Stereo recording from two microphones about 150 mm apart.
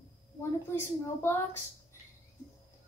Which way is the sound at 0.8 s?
15° left (ahead or behind).